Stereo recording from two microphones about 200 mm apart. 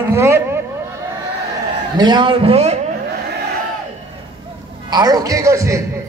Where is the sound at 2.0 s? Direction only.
25° right (ahead or behind).